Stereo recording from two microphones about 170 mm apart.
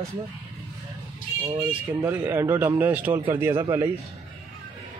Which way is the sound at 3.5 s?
30° right (ahead or behind).